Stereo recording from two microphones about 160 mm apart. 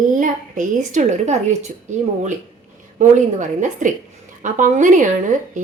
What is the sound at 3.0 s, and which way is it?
Speech, 50° right (ahead or behind).